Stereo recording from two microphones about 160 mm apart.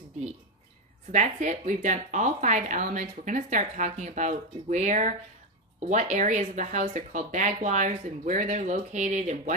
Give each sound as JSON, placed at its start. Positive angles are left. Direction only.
{"t": 1.1, "sound": "speech", "side_deg": -50}